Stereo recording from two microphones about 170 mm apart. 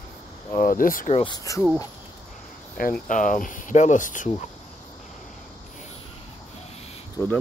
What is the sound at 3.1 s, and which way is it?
Speech, 50° left (ahead or behind).